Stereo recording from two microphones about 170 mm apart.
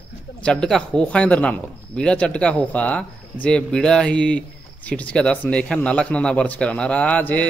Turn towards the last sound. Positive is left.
turn(degrees=10)  # may be behind; listen again after turning